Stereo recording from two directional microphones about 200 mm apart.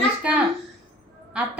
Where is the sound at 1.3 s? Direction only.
5° right (ahead or behind).